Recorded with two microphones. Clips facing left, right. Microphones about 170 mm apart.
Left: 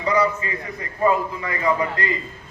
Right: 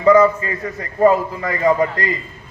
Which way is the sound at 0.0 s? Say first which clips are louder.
Right 9 dB; 50° right (ahead or behind).